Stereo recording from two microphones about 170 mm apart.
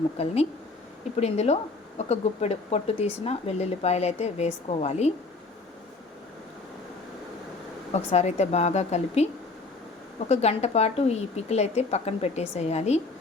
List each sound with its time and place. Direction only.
0.2 s speech: 35° left (ahead or behind)
7.9 s speech: 40° left (ahead or behind)